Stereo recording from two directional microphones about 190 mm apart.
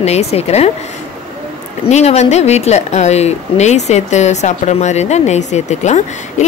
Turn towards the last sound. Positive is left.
turn(degrees=35)  # may be behind; listen again after turning